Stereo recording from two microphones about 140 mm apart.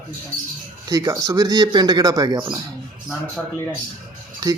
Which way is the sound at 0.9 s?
25° right (ahead or behind).